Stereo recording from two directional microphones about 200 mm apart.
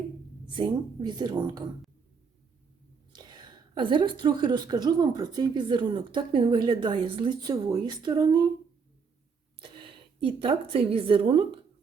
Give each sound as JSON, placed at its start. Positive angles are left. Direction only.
{"t": 0.4, "sound": "a woman's voice", "side_deg": -25}
{"t": 3.1, "sound": "a woman's voice", "side_deg": -20}
{"t": 9.6, "sound": "a woman's voice", "side_deg": -25}